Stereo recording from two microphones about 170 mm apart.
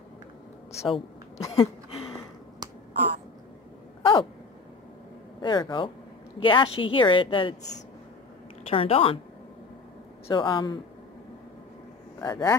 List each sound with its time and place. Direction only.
1.4 s a woman's voice: 20° left (ahead or behind)
4.0 s a sound: 30° left (ahead or behind)
5.4 s a woman's voice: 25° left (ahead or behind)
8.6 s a woman's voice: 35° left (ahead or behind)
10.3 s a woman's voice: 25° left (ahead or behind)
12.2 s a woman's voice: 25° left (ahead or behind)